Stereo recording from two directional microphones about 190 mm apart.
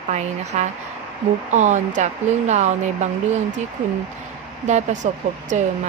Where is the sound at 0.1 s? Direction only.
35° right (ahead or behind).